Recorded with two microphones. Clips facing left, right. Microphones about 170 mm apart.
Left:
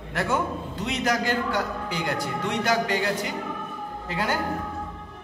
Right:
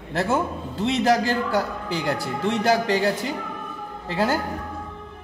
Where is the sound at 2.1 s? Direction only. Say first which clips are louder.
Right 4 dB; 30° right (ahead or behind).